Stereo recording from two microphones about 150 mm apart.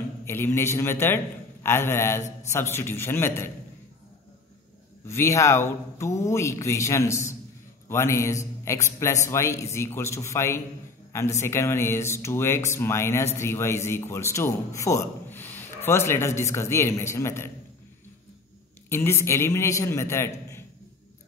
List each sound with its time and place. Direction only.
0.2 s a man's voice: 15° left (ahead or behind)
5.0 s a man's voice: 20° left (ahead or behind)
18.9 s speech: 15° left (ahead or behind)